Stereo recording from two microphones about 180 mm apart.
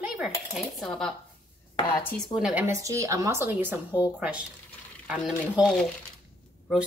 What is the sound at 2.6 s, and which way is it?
Speech, 15° right (ahead or behind).